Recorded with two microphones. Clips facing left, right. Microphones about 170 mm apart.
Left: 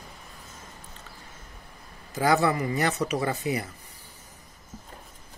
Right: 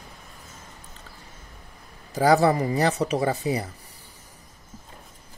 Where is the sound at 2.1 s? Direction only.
35° right (ahead or behind).